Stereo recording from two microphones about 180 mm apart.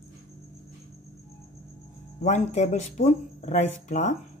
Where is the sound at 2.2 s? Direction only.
40° left (ahead or behind).